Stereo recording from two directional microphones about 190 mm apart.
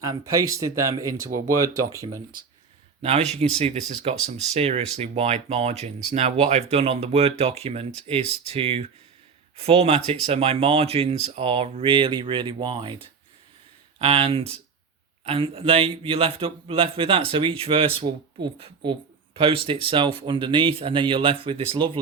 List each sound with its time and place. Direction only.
0.0 s speech: 20° right (ahead or behind)
3.0 s speech: 35° right (ahead or behind)